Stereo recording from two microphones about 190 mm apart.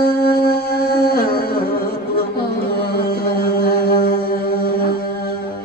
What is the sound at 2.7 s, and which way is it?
Mantra, 55° left (ahead or behind).